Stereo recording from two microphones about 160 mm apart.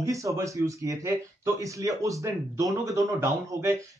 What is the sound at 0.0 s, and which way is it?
A man's voice, 20° right (ahead or behind).